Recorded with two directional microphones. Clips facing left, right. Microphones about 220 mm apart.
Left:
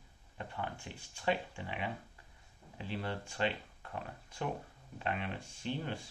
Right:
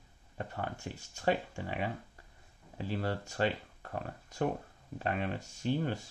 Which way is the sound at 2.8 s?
40° right (ahead or behind).